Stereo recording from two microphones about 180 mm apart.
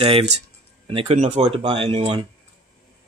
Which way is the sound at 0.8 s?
30° right (ahead or behind).